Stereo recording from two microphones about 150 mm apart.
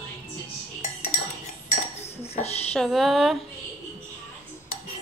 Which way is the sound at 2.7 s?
Centre (ahead or behind).